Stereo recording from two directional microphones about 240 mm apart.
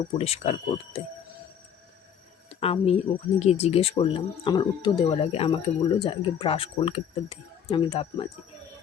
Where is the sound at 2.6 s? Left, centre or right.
Left.